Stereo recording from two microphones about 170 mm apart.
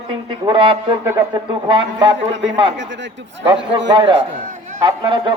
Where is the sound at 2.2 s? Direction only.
90° right.